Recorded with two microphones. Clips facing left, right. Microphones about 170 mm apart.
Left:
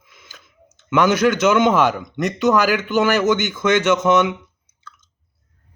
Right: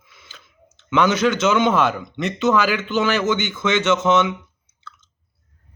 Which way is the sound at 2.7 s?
15° left (ahead or behind).